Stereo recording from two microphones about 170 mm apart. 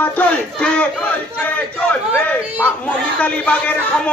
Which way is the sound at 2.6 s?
10° left (ahead or behind).